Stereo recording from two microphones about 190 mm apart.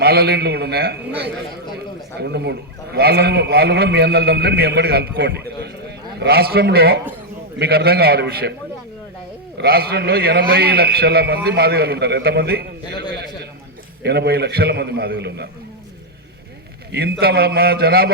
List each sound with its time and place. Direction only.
0.0 s a man's voice: 55° right (ahead or behind)
2.1 s a man's voice: 60° right (ahead or behind)
9.6 s a man's voice: 55° right (ahead or behind)
14.0 s a man's voice: 60° right (ahead or behind)
16.9 s a man's voice: 55° right (ahead or behind)